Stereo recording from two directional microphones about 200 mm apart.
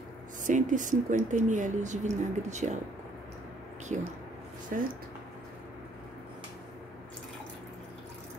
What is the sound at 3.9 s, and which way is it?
Speech, 35° right (ahead or behind).